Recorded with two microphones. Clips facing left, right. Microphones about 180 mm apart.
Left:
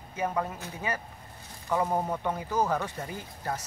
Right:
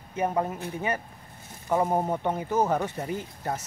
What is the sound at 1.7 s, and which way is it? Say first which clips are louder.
Speech: right 3 dB; 25° right (ahead or behind).